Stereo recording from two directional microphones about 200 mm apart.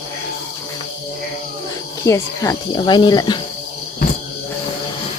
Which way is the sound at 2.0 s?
15° left (ahead or behind).